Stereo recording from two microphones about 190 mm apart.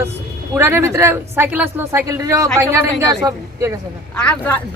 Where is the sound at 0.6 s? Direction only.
15° right (ahead or behind).